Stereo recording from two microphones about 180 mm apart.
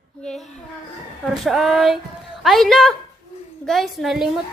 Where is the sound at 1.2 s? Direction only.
Centre (ahead or behind).